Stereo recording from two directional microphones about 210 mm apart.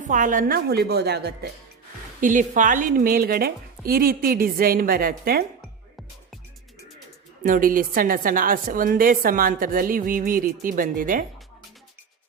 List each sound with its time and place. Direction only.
0.0 s a woman's voice: 35° right (ahead or behind)
2.2 s a woman's voice: 35° right (ahead or behind)
7.4 s a woman's voice: 40° right (ahead or behind)